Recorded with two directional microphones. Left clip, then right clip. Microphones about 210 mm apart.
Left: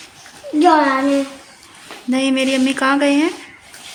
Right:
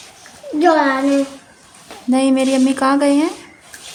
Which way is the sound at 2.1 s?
20° right (ahead or behind).